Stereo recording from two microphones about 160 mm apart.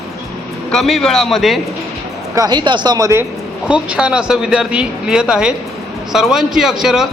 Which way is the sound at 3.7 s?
5° right (ahead or behind).